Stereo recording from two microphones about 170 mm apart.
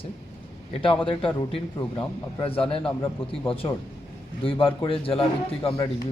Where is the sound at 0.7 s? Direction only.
30° left (ahead or behind).